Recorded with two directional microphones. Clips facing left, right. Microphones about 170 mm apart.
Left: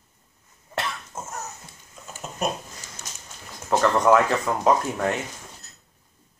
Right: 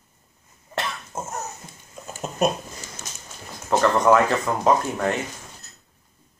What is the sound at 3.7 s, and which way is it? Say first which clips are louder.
Speech: right 1 dB; 5° left (ahead or behind).